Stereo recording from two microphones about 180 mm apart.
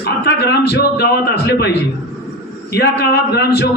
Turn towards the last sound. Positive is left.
turn(degrees=65)  # may be behind; listen again after turning